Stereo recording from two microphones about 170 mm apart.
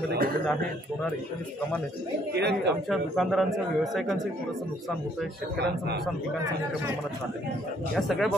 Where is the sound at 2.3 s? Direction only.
75° right (ahead or behind).